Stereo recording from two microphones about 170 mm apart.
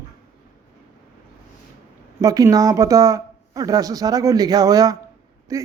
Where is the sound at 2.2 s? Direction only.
20° right (ahead or behind).